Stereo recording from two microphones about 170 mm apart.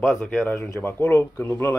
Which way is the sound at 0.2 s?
10° left (ahead or behind).